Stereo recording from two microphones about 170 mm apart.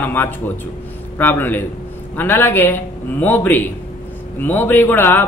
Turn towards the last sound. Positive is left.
turn(degrees=10)  # may be behind; listen again after turning